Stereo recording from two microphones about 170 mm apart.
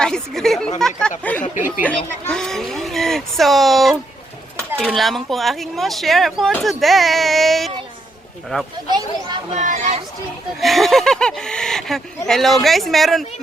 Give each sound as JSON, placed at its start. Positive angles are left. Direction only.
{"t": 0.0, "sound": "speech", "side_deg": 5}
{"t": 9.5, "sound": "speech", "side_deg": -45}
{"t": 10.6, "sound": "speech", "side_deg": 0}